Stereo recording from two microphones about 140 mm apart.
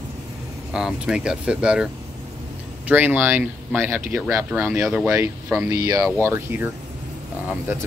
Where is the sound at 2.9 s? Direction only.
10° right (ahead or behind).